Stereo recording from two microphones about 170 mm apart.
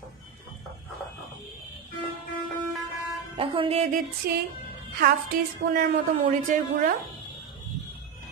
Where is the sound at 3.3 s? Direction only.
30° right (ahead or behind).